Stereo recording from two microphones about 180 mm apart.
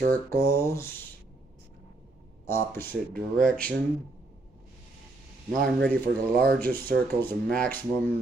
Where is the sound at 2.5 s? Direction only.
15° left (ahead or behind).